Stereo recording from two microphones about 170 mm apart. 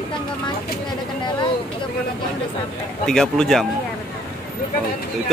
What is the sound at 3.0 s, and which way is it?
Speech, 5° left (ahead or behind).